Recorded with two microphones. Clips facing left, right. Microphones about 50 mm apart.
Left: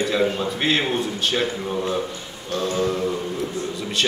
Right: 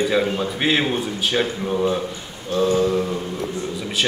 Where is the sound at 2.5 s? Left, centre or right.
Centre.